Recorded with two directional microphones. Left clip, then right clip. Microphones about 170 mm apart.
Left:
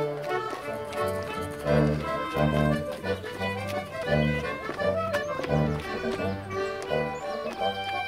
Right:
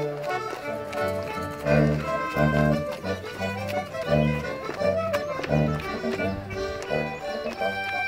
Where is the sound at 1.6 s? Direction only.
20° right (ahead or behind).